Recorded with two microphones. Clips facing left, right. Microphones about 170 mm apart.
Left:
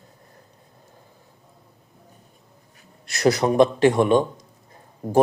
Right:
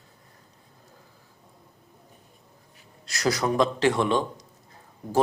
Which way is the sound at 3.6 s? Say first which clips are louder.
Left 7 dB; 20° left (ahead or behind).